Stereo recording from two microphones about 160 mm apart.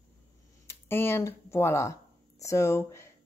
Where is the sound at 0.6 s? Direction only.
15° left (ahead or behind).